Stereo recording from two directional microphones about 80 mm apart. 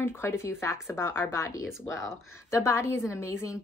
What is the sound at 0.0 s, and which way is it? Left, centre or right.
Speech, left.